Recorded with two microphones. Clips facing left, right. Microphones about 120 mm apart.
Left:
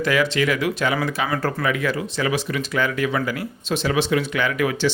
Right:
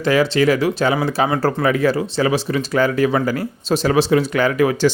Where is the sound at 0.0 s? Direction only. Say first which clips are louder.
Right 5 dB; 30° right (ahead or behind).